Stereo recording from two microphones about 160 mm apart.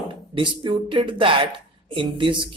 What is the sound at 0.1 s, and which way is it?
Speech, 30° right (ahead or behind).